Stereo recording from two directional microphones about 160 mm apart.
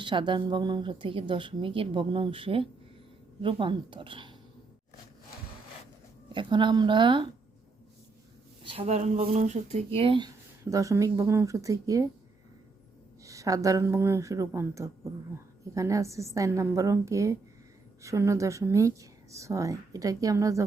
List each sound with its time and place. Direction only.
0.0 s a woman's voice: 30° right (ahead or behind)
6.2 s a woman's voice: 30° right (ahead or behind)
8.6 s a woman's voice: 35° right (ahead or behind)
10.6 s a woman's voice: 20° right (ahead or behind)
13.2 s a woman's voice: 20° right (ahead or behind)